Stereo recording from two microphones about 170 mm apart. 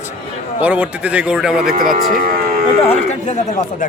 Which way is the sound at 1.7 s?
55° right (ahead or behind).